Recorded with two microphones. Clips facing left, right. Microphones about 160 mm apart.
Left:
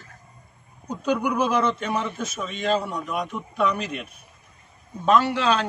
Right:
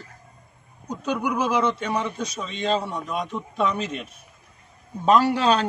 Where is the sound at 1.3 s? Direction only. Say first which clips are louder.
Right 2 dB; 10° right (ahead or behind).